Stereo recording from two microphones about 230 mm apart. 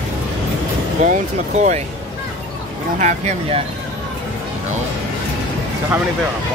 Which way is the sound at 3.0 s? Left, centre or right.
Right.